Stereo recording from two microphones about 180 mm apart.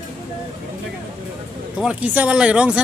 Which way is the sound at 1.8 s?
5° right (ahead or behind).